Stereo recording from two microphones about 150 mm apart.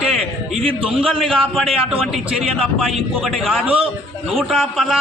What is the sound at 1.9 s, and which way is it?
A man's voice, centre (ahead or behind).